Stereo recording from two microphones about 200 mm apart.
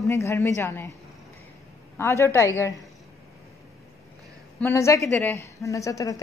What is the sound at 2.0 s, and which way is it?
Speech, 15° left (ahead or behind).